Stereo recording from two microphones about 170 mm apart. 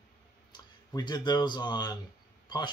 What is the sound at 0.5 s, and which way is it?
Speech, 25° left (ahead or behind).